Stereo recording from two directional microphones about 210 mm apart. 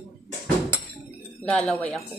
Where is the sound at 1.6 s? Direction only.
5° left (ahead or behind).